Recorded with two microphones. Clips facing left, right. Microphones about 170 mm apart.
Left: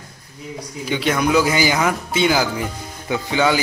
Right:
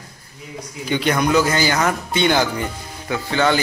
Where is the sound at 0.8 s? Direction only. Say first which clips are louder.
Even; centre (ahead or behind).